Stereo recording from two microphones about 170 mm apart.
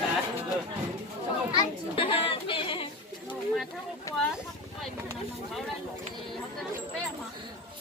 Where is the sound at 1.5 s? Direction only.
30° left (ahead or behind).